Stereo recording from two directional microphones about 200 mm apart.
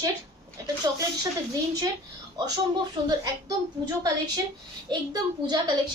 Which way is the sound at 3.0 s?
20° right (ahead or behind).